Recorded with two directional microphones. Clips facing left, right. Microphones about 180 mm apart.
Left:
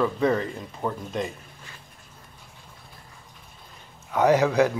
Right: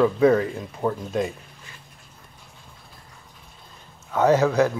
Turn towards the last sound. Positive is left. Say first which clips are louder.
# right 1 dB
turn(degrees=15)  # may be behind; listen again after turning